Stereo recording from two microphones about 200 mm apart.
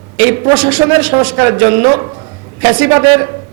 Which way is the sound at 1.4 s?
20° right (ahead or behind).